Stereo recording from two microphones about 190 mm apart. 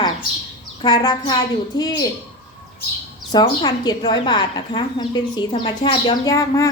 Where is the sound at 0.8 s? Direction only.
20° left (ahead or behind).